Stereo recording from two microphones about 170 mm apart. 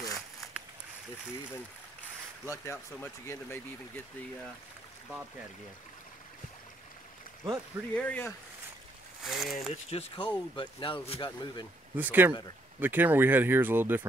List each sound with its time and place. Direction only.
2.5 s speech: 15° left (ahead or behind)
7.4 s speech: 10° left (ahead or behind)
9.7 s speech: 35° left (ahead or behind)
12.0 s speech: 10° right (ahead or behind)